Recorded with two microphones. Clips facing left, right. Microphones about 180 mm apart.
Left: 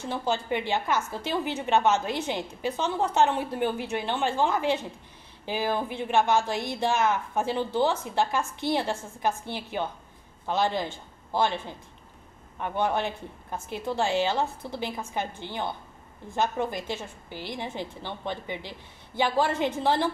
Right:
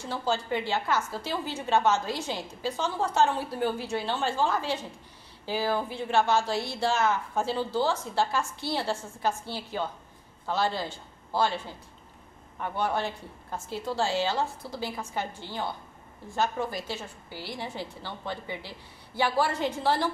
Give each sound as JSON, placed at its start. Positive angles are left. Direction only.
{"t": 0.1, "sound": "a woman's voice", "side_deg": 20}